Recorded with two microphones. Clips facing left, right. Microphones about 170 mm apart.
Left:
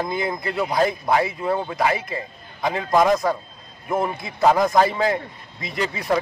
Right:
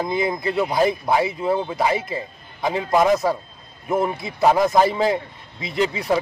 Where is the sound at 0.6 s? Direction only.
Centre (ahead or behind).